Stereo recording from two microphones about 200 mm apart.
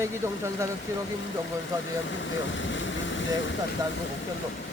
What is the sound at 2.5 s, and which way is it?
Speech, 70° left (ahead or behind).